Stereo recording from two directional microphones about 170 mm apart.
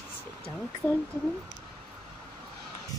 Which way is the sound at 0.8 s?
5° left (ahead or behind).